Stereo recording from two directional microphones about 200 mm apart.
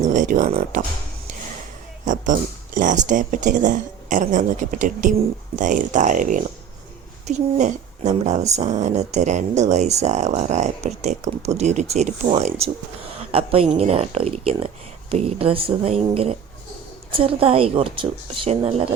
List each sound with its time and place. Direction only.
0.0 s speech: 40° right (ahead or behind)
2.0 s a woman's voice: 40° right (ahead or behind)